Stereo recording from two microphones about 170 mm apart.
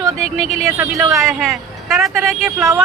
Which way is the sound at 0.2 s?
40° left (ahead or behind).